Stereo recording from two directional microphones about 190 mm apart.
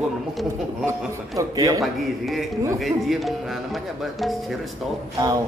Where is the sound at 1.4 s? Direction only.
15° right (ahead or behind).